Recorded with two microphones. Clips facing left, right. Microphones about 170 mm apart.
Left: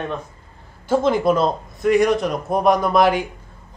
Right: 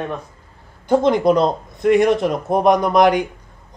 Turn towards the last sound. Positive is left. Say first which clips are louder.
# right 2 dB
turn(degrees=-20)  # may be behind; listen again after turning